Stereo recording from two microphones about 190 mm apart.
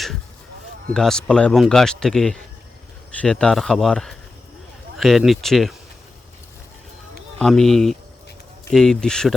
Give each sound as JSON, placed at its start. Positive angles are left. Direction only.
{"t": 0.9, "sound": "a man's voice", "side_deg": 5}
{"t": 7.3, "sound": "a man's voice", "side_deg": 0}